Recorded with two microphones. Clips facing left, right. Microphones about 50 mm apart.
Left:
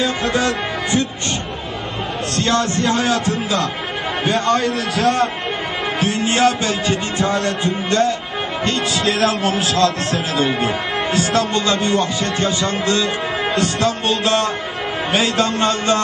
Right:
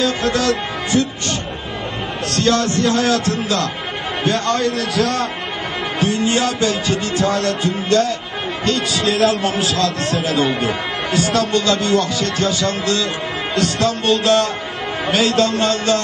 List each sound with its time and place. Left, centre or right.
0.0 s speech: left
2.3 s music: left
4.2 s a man's voice: centre
5.9 s music: left
8.6 s speech: left
10.5 s a man's voice: centre
11.1 s music: left